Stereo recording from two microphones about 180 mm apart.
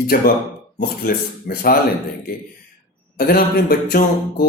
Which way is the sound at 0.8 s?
55° left (ahead or behind).